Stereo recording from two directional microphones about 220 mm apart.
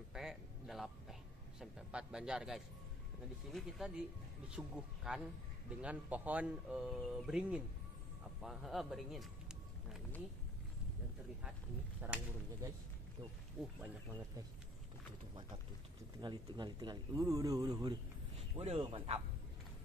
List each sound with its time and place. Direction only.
0.1 s a sound: centre (ahead or behind)
1.6 s speech: 5° right (ahead or behind)
12.0 s speech: 10° right (ahead or behind)
13.6 s speech: 5° right (ahead or behind)
16.2 s speech: 20° right (ahead or behind)
18.6 s speech: 25° right (ahead or behind)